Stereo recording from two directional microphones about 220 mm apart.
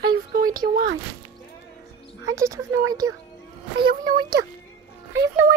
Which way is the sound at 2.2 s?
15° right (ahead or behind).